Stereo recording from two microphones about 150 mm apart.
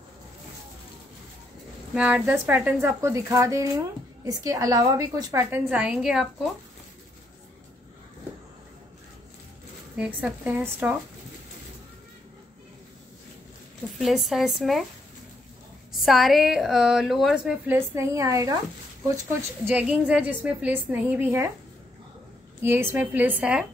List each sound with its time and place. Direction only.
2.0 s a woman's voice: 10° right (ahead or behind)
9.9 s speech: 5° right (ahead or behind)
13.9 s a woman's voice: centre (ahead or behind)
16.0 s a woman's voice: centre (ahead or behind)
17.6 s a woman's voice: 15° right (ahead or behind)
19.7 s speech: 10° right (ahead or behind)
22.6 s speech: 15° right (ahead or behind)